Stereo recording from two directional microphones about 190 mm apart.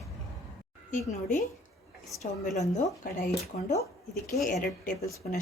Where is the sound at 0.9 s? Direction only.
40° left (ahead or behind).